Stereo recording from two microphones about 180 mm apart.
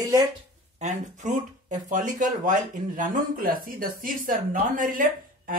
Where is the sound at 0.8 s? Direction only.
40° right (ahead or behind).